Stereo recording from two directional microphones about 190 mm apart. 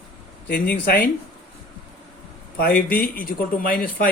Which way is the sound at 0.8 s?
45° left (ahead or behind).